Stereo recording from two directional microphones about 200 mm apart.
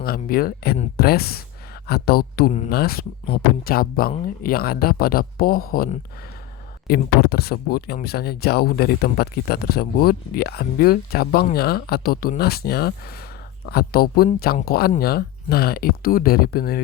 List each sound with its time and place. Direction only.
0.0 s speech: 50° left (ahead or behind)